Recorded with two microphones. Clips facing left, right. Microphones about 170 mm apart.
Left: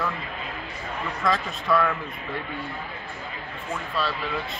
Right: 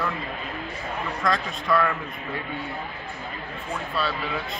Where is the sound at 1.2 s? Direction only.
Centre (ahead or behind).